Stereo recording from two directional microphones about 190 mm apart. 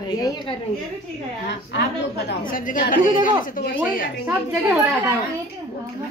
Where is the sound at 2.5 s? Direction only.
45° left (ahead or behind).